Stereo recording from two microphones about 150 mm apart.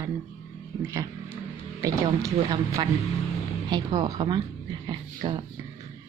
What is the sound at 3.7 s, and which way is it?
Speech, 25° right (ahead or behind).